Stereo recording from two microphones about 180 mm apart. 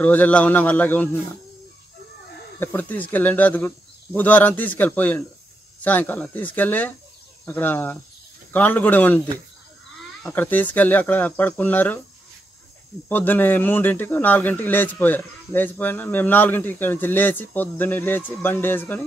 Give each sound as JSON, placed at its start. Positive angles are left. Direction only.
{"t": 0.0, "sound": "speech", "side_deg": 10}
{"t": 2.6, "sound": "speech", "side_deg": 10}
{"t": 10.2, "sound": "speech", "side_deg": 10}
{"t": 13.1, "sound": "speech", "side_deg": 10}